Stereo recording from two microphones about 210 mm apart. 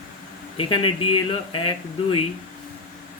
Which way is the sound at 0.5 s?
25° left (ahead or behind).